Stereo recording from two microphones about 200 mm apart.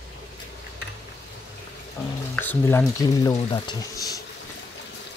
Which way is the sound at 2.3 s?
10° left (ahead or behind).